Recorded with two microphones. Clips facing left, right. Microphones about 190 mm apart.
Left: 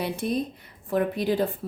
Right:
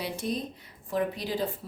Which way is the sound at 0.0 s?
55° left (ahead or behind).